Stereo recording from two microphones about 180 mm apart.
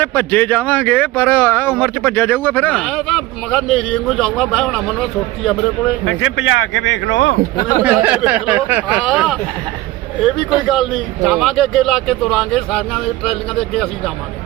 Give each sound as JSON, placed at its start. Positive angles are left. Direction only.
{"t": 0.0, "sound": "speech", "side_deg": 10}
{"t": 6.1, "sound": "speech", "side_deg": 90}
{"t": 7.5, "sound": "speech", "side_deg": 20}
{"t": 7.9, "sound": "speech", "side_deg": -10}
{"t": 10.7, "sound": "speech", "side_deg": 0}